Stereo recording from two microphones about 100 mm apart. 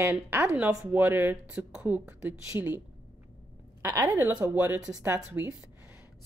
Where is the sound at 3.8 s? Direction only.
30° right (ahead or behind).